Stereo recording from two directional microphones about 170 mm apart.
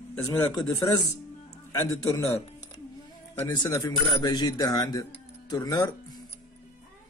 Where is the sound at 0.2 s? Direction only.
20° left (ahead or behind).